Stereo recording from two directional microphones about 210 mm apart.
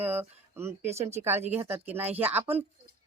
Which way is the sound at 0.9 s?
30° right (ahead or behind).